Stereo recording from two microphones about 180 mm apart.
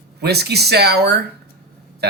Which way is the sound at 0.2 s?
65° right (ahead or behind).